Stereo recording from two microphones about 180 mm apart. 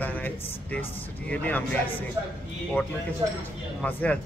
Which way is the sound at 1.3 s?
10° left (ahead or behind).